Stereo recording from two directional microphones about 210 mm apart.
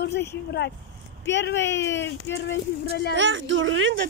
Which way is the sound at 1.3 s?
55° left (ahead or behind).